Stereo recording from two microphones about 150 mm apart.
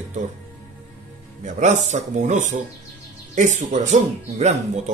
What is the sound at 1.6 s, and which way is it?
Speech, 50° right (ahead or behind).